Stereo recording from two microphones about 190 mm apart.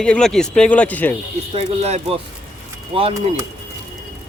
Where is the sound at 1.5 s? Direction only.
35° right (ahead or behind).